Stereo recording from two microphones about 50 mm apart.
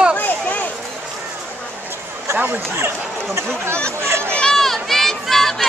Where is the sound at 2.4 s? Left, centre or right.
Right.